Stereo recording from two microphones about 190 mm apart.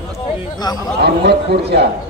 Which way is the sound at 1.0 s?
60° right (ahead or behind).